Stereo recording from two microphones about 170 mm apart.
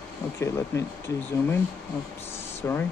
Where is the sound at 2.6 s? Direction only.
15° left (ahead or behind).